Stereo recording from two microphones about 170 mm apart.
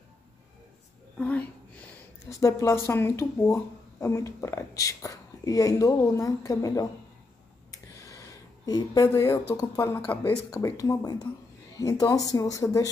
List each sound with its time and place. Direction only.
1.1 s a woman's voice: 10° left (ahead or behind)
7.7 s a sound: 20° left (ahead or behind)
9.5 s speech: 20° left (ahead or behind)